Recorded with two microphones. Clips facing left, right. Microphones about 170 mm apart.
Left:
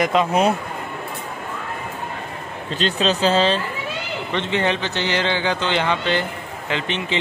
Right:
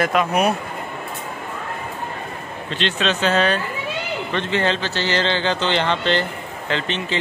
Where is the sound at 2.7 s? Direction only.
35° left (ahead or behind).